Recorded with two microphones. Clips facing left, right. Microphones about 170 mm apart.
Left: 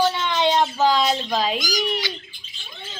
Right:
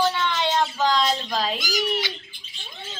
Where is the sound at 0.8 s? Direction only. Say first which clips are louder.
Left 3 dB; 10° left (ahead or behind).